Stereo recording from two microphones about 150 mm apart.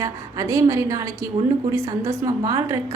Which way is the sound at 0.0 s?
20° right (ahead or behind).